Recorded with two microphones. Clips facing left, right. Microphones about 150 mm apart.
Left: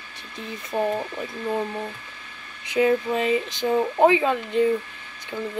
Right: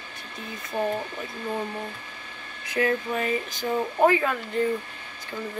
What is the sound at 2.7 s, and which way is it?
Speech, 20° left (ahead or behind).